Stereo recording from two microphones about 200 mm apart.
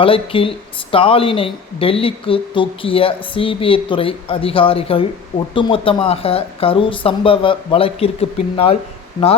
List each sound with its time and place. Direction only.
0.0 s speech: 25° left (ahead or behind)